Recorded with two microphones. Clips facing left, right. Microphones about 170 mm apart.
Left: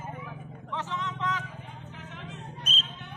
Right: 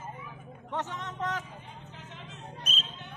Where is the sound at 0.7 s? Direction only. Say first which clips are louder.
Left 1 dB; 45° right (ahead or behind).